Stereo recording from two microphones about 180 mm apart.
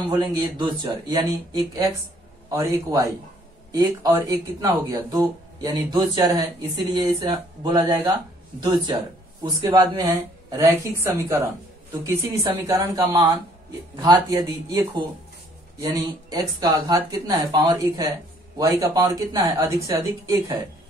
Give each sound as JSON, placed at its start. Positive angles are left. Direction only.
{"t": 0.1, "sound": "a woman's voice", "side_deg": -25}